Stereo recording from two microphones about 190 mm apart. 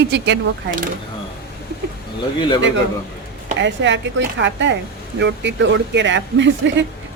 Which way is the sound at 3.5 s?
70° right (ahead or behind).